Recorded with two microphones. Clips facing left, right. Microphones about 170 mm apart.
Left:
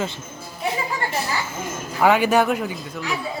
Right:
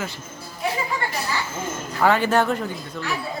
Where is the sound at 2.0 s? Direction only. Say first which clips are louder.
Left 2 dB; 15° left (ahead or behind).